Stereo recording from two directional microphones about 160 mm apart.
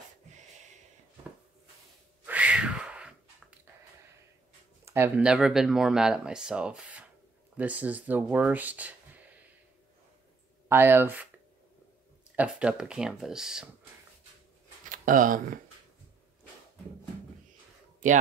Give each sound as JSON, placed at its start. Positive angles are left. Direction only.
{"t": 2.2, "sound": "a sound", "side_deg": -10}
{"t": 4.8, "sound": "speech", "side_deg": -15}
{"t": 10.7, "sound": "speech", "side_deg": -15}
{"t": 12.4, "sound": "speech", "side_deg": -5}
{"t": 14.9, "sound": "speech", "side_deg": -55}